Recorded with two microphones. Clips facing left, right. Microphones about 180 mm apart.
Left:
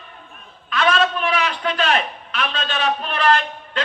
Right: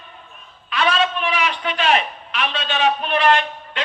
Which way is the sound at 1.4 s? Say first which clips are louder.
Right 1 dB; 40° left (ahead or behind).